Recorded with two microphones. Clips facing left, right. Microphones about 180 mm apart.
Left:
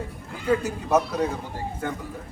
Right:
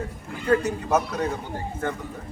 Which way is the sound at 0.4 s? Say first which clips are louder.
Right 2 dB; 5° left (ahead or behind).